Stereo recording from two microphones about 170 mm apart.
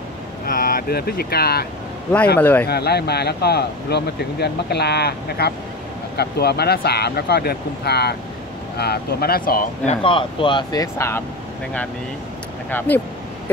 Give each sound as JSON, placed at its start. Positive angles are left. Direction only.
{"t": 0.5, "sound": "speech", "side_deg": 55}
{"t": 2.3, "sound": "speech", "side_deg": 10}
{"t": 2.6, "sound": "speech", "side_deg": 70}
{"t": 10.0, "sound": "speech", "side_deg": 30}
{"t": 12.7, "sound": "speech", "side_deg": 10}